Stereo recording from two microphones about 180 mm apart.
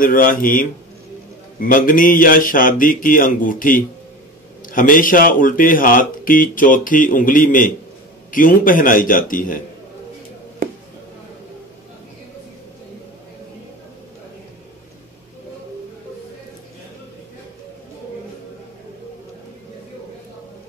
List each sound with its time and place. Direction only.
0.0 s speech: 50° left (ahead or behind)